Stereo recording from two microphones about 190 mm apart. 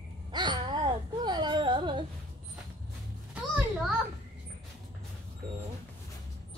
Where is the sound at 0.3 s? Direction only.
25° right (ahead or behind).